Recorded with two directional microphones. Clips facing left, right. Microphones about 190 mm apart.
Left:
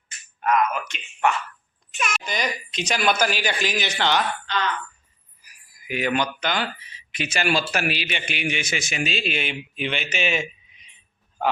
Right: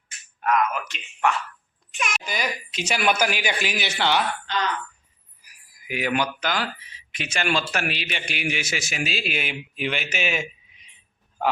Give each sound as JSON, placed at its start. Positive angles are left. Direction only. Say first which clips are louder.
{"t": 0.4, "sound": "speech", "louder": "left 1 dB", "side_deg": 0}
{"t": 1.9, "sound": "speech", "louder": "left 1 dB", "side_deg": -15}
{"t": 5.9, "sound": "speech", "louder": "left 1 dB", "side_deg": -10}